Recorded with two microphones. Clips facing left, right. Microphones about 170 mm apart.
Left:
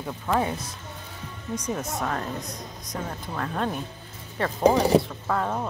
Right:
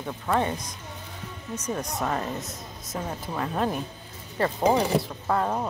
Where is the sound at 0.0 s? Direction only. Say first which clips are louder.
Even; 5° left (ahead or behind).